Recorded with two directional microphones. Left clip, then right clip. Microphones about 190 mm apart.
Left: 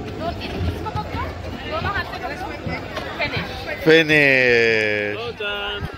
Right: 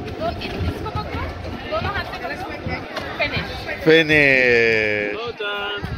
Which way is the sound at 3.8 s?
Centre (ahead or behind).